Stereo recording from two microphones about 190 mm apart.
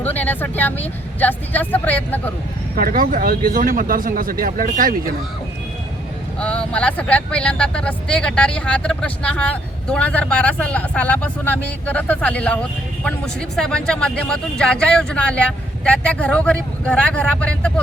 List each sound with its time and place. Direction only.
0.0 s speech: 10° left (ahead or behind)
2.7 s speech: 50° right (ahead or behind)
6.4 s speech: 5° left (ahead or behind)
13.6 s speech: 5° left (ahead or behind)